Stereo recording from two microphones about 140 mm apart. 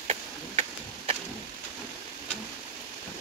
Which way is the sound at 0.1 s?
50° right (ahead or behind).